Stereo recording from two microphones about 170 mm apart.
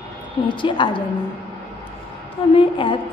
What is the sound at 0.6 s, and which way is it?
Speech, 30° left (ahead or behind).